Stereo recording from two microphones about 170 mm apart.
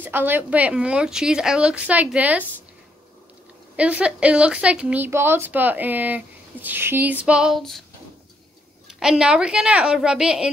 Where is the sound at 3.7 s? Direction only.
5° right (ahead or behind).